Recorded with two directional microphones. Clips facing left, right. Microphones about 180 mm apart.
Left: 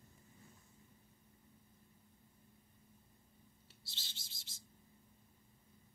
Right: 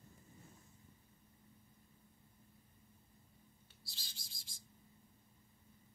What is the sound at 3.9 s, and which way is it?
Bird, 25° left (ahead or behind).